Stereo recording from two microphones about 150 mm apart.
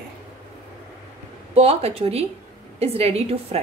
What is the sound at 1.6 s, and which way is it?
A woman's voice, 40° right (ahead or behind).